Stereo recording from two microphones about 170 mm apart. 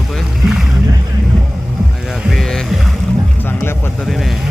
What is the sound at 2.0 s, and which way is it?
Boat, centre (ahead or behind).